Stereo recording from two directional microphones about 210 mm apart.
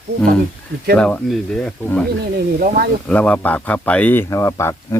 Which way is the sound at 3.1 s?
5° left (ahead or behind).